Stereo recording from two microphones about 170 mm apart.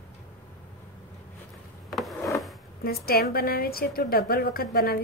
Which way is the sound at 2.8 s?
65° left (ahead or behind).